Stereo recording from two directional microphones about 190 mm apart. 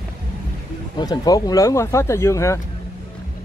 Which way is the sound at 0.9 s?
20° left (ahead or behind).